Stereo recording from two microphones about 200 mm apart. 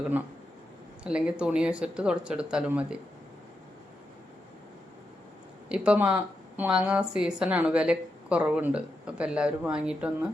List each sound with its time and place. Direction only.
1.0 s a woman's voice: 5° right (ahead or behind)
5.6 s a woman's voice: 5° right (ahead or behind)